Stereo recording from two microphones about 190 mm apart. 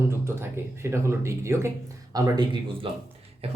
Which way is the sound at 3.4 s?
30° right (ahead or behind).